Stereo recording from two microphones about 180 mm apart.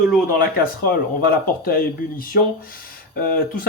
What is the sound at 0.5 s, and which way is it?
Speech, 55° left (ahead or behind).